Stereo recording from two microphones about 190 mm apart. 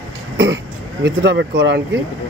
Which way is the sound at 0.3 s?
65° right (ahead or behind).